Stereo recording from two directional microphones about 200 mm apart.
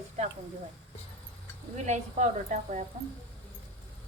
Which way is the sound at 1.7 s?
35° right (ahead or behind).